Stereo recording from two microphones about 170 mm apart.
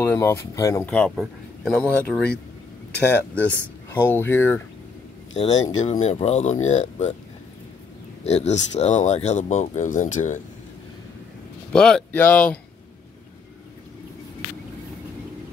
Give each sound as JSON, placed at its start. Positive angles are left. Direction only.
{"t": 0.0, "sound": "speech", "side_deg": 15}
{"t": 5.4, "sound": "speech", "side_deg": 40}
{"t": 8.2, "sound": "speech", "side_deg": 40}
{"t": 11.7, "sound": "speech", "side_deg": 5}